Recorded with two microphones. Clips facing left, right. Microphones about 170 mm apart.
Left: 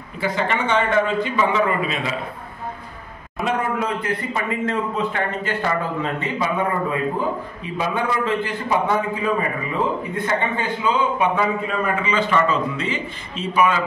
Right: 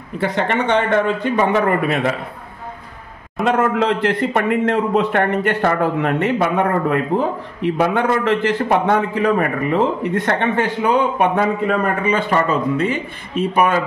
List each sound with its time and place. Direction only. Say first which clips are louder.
0.2 s a man's voice: right 3 dB; 65° right (ahead or behind)
3.4 s speech: right 6 dB; 90° right; by 13.7 s 55° right (ahead or behind)